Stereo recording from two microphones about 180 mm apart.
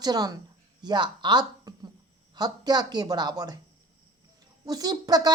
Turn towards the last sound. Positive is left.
turn(degrees=-20)  # may be behind; listen again after turning